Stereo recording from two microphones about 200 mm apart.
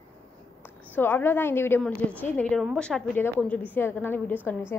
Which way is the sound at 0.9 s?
10° left (ahead or behind).